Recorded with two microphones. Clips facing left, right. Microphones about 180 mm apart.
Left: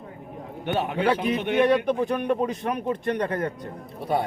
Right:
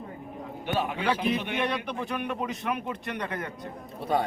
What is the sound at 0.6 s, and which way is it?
A man's voice, 60° left (ahead or behind).